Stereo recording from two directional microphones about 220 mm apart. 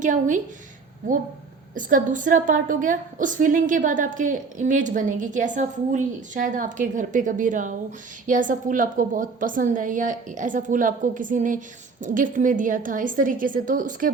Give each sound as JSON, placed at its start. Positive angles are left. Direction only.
{"t": 0.0, "sound": "a woman's voice", "side_deg": -35}
{"t": 1.7, "sound": "a woman's voice", "side_deg": -35}